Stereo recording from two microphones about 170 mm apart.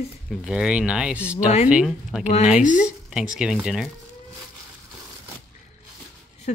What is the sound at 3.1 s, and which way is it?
Speech, 5° right (ahead or behind).